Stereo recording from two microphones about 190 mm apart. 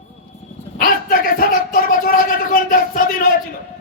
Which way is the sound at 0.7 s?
50° left (ahead or behind).